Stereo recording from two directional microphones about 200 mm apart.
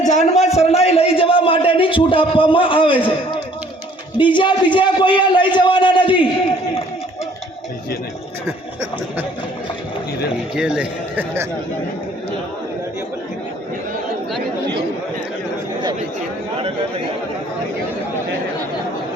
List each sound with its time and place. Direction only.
0.0 s a sound: 35° left (ahead or behind)
4.4 s a man's voice: 25° left (ahead or behind)
10.5 s a man's voice: 5° right (ahead or behind)